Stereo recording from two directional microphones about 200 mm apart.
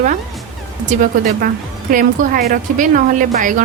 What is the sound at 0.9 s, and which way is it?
A woman's voice, 45° right (ahead or behind).